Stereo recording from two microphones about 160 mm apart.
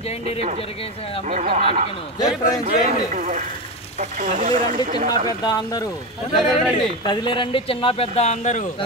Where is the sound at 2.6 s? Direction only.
50° right (ahead or behind).